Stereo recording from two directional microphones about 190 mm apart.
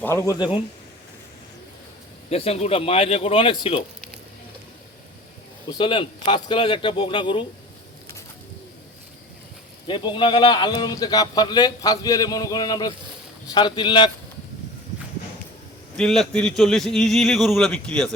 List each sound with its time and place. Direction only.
0.0 s a man's voice: 15° left (ahead or behind)
2.3 s speech: 30° left (ahead or behind)
5.6 s speech: 25° left (ahead or behind)
9.8 s speech: 25° left (ahead or behind)
16.0 s a man's voice: 5° left (ahead or behind)